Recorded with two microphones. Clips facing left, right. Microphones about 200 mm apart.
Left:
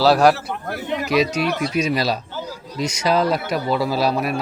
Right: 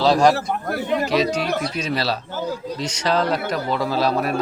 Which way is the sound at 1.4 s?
40° right (ahead or behind).